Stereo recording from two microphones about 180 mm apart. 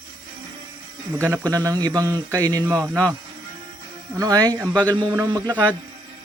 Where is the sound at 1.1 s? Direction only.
10° right (ahead or behind).